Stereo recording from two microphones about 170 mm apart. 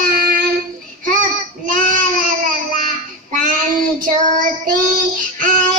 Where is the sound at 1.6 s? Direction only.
50° right (ahead or behind).